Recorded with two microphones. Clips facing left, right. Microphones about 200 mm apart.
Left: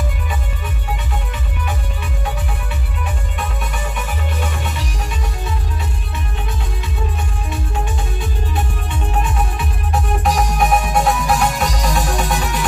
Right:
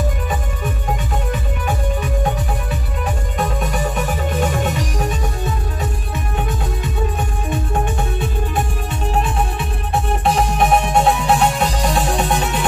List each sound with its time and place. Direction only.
3.3 s music: 40° right (ahead or behind)
10.2 s music: 30° right (ahead or behind)